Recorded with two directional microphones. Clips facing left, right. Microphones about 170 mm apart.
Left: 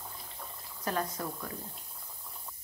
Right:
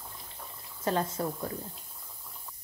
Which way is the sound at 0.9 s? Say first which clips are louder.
Right 4 dB; 25° right (ahead or behind).